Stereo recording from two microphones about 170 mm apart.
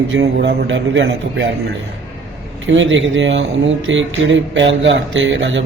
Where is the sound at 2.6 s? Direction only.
90° right.